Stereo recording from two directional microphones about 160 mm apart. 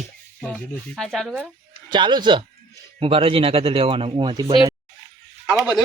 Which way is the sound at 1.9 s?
30° right (ahead or behind).